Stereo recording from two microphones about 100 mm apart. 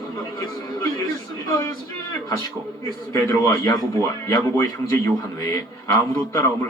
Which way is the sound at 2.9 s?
35° left (ahead or behind).